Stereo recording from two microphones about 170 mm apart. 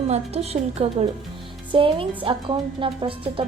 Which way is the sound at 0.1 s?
35° right (ahead or behind).